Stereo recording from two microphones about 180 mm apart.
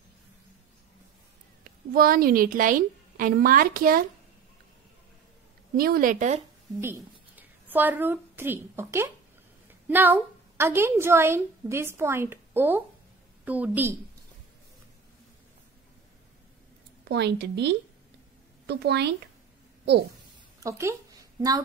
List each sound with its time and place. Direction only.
1.6 s a woman's voice: 55° right (ahead or behind)
5.8 s speech: 55° right (ahead or behind)
6.8 s a woman's voice: 10° right (ahead or behind)
17.1 s a woman's voice: 65° right (ahead or behind)
20.6 s a woman's voice: 15° right (ahead or behind)